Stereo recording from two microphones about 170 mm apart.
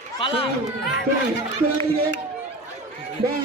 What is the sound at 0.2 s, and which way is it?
Speech, 30° left (ahead or behind).